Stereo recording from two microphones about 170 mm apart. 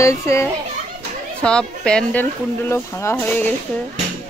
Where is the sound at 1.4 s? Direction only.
5° left (ahead or behind).